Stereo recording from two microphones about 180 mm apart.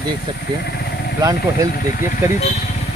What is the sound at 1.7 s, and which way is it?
Speech, 50° left (ahead or behind).